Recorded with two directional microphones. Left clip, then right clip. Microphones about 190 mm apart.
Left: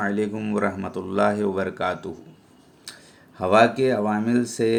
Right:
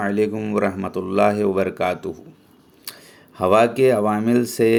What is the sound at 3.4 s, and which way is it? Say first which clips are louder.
Speech: right 2 dB; 30° right (ahead or behind).